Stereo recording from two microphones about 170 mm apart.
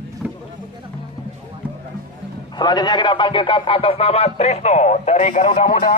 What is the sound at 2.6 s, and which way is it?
Speech, 25° left (ahead or behind).